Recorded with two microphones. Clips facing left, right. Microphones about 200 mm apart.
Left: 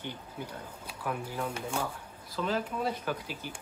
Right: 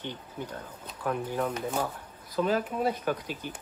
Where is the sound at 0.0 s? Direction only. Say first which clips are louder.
Right 2 dB; 10° left (ahead or behind).